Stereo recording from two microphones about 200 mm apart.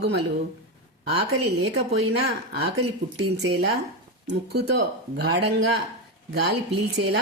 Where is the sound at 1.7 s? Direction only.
55° right (ahead or behind).